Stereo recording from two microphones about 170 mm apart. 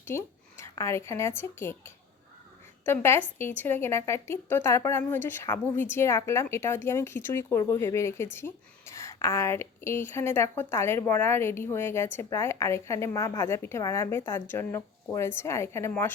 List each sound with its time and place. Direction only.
0.0 s a woman's voice: 15° left (ahead or behind)